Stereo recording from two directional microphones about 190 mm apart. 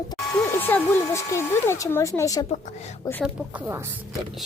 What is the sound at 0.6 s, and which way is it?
Speech, 10° left (ahead or behind).